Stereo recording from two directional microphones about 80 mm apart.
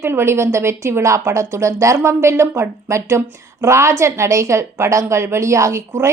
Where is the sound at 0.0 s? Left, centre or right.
Right.